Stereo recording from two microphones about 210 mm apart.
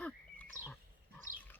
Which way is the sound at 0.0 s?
5° left (ahead or behind).